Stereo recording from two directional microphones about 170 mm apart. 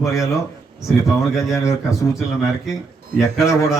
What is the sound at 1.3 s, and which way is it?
Speech, centre (ahead or behind).